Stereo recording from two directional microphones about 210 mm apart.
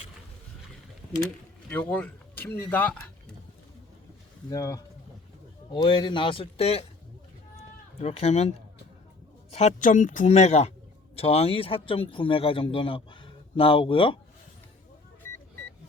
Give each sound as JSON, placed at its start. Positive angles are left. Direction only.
{"t": 1.9, "sound": "speech", "side_deg": 5}
{"t": 4.4, "sound": "speech", "side_deg": 15}
{"t": 8.0, "sound": "speech", "side_deg": 30}